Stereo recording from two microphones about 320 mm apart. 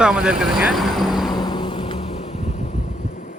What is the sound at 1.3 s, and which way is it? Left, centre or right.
Vehicle, centre.